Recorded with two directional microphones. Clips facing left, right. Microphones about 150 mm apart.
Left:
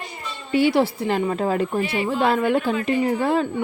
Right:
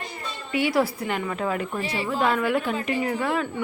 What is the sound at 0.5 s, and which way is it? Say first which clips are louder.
A woman's voice: left 5 dB; 30° left (ahead or behind).